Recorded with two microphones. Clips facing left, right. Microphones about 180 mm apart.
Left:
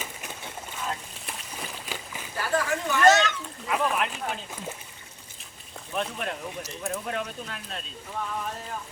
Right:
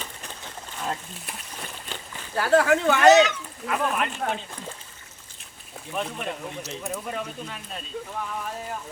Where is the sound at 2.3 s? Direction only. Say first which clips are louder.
Right 8 dB; 75° right (ahead or behind).